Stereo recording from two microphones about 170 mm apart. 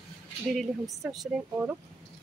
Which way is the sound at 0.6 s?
Centre (ahead or behind).